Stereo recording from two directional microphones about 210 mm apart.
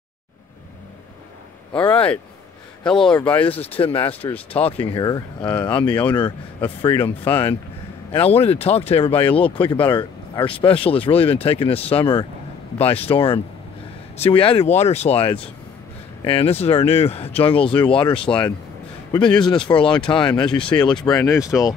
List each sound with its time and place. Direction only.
1.8 s speech: 5° left (ahead or behind)
3.7 s speech: 25° left (ahead or behind)